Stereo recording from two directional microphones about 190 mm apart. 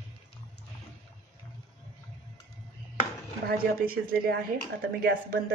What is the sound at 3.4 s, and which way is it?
Speech, 50° right (ahead or behind).